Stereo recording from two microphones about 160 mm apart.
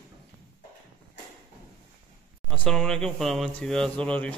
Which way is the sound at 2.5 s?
5° left (ahead or behind).